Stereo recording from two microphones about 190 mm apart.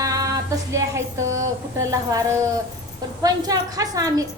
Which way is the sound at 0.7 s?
15° right (ahead or behind).